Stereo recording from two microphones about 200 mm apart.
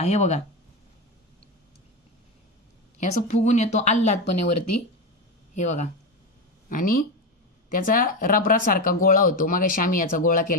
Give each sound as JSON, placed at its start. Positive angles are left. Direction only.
{"t": 0.0, "sound": "speech", "side_deg": 35}
{"t": 3.0, "sound": "speech", "side_deg": 35}
{"t": 5.5, "sound": "speech", "side_deg": 35}